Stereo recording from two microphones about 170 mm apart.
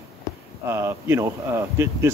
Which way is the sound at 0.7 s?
15° right (ahead or behind).